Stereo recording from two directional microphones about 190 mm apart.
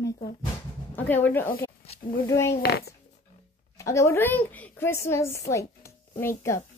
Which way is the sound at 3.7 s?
15° left (ahead or behind).